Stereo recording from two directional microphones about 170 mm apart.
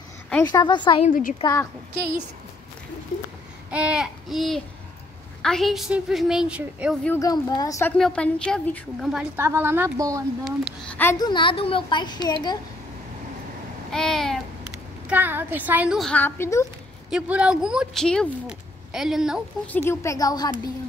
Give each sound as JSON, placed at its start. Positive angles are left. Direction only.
{"t": 0.5, "sound": "speech", "side_deg": 25}
{"t": 1.0, "sound": "a woman's voice", "side_deg": 55}
{"t": 1.4, "sound": "a woman's voice", "side_deg": 15}
{"t": 3.7, "sound": "a woman's voice", "side_deg": -5}
{"t": 7.2, "sound": "speech", "side_deg": 20}
{"t": 8.0, "sound": "a woman's voice", "side_deg": 5}
{"t": 9.4, "sound": "a woman's voice", "side_deg": -15}
{"t": 10.4, "sound": "a woman's voice", "side_deg": 0}
{"t": 11.1, "sound": "speech", "side_deg": 25}
{"t": 13.9, "sound": "babbling", "side_deg": 5}
{"t": 15.0, "sound": "a woman's voice", "side_deg": -10}
{"t": 17.1, "sound": "a woman's voice", "side_deg": -5}
{"t": 19.6, "sound": "a woman's voice", "side_deg": 10}